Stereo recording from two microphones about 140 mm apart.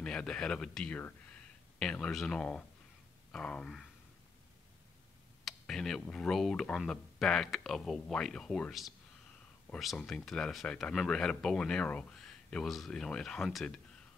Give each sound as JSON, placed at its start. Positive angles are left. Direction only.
{"t": 0.0, "sound": "speech", "side_deg": 5}
{"t": 5.4, "sound": "speech", "side_deg": 5}